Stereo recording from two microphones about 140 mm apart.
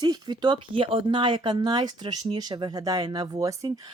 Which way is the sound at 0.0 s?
30° right (ahead or behind).